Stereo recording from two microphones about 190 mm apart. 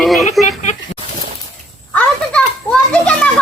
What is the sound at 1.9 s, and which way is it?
Children playing, 5° left (ahead or behind).